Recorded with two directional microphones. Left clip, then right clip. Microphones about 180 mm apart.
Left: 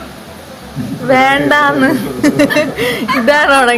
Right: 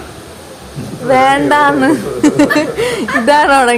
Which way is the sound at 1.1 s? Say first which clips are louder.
Even; 10° right (ahead or behind).